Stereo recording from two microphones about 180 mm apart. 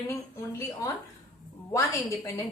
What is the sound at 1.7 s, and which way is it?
Speech, 15° left (ahead or behind).